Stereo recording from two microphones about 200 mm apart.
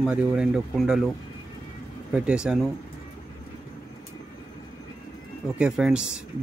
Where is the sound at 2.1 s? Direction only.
5° right (ahead or behind).